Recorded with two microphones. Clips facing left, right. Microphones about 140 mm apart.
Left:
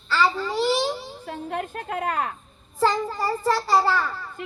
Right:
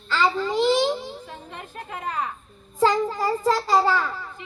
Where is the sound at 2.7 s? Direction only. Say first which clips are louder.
Right 2 dB; centre (ahead or behind).